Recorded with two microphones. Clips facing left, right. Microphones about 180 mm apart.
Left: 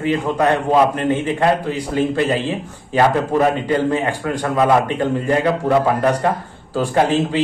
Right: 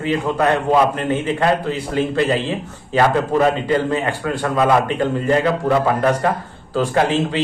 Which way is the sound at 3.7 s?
15° left (ahead or behind).